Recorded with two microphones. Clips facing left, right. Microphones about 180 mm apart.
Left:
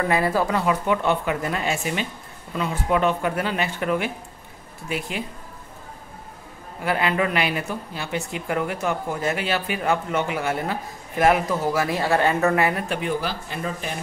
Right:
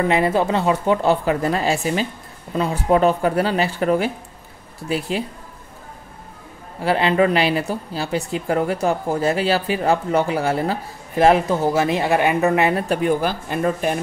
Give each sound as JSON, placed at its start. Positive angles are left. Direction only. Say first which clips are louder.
{"t": 0.0, "sound": "speech", "louder": "right 4 dB", "side_deg": -20}
{"t": 6.8, "sound": "speech", "louder": "right 6 dB", "side_deg": -30}
{"t": 12.8, "sound": "speech", "louder": "right 6 dB", "side_deg": -45}